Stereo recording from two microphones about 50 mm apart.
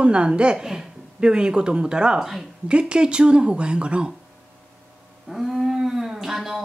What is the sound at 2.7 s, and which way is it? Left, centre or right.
A woman's voice, centre.